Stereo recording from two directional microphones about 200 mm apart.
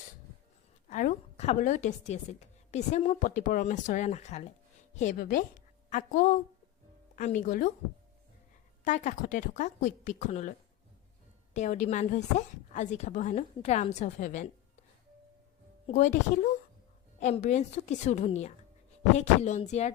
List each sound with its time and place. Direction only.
0.9 s a woman's voice: 40° left (ahead or behind)
8.8 s a woman's voice: 40° left (ahead or behind)
11.5 s a woman's voice: 35° left (ahead or behind)
15.9 s a woman's voice: 40° left (ahead or behind)